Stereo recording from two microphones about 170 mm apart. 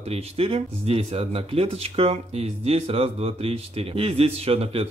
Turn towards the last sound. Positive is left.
turn(degrees=-35)  # may be behind; listen again after turning